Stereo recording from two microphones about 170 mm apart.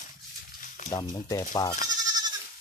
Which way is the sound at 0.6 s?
45° left (ahead or behind).